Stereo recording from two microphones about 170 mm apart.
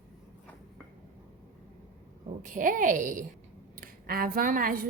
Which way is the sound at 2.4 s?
50° right (ahead or behind).